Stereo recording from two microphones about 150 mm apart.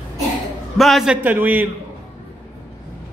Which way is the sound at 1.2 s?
10° right (ahead or behind).